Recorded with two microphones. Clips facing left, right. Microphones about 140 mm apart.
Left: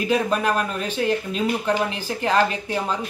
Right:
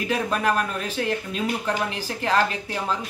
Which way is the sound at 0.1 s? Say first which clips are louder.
Left 2 dB; 10° left (ahead or behind).